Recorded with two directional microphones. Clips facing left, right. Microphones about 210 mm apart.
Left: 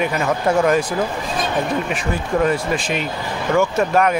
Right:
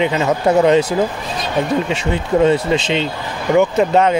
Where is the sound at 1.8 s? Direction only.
25° right (ahead or behind).